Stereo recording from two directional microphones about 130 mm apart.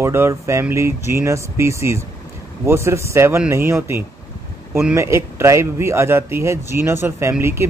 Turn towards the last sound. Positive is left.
turn(degrees=-20)  # may be behind; listen again after turning